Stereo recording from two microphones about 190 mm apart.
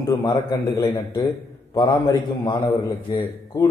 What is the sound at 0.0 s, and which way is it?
A man's voice, 20° left (ahead or behind).